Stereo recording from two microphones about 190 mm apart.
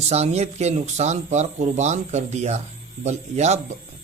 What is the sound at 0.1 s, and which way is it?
Speech, 35° right (ahead or behind).